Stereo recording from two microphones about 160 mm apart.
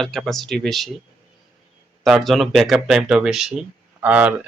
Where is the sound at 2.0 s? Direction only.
Centre (ahead or behind).